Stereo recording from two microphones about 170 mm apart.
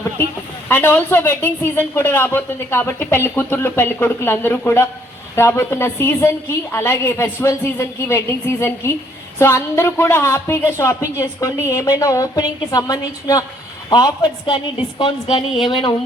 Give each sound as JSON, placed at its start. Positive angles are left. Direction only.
{"t": 0.7, "sound": "a man's voice", "side_deg": 10}